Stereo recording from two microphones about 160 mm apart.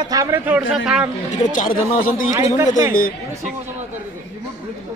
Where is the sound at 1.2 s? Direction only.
55° left (ahead or behind).